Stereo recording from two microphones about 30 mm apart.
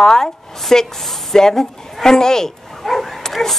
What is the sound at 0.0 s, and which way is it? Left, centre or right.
Speech, centre.